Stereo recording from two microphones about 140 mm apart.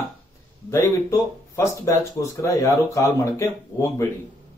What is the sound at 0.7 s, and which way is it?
Speech, 20° left (ahead or behind).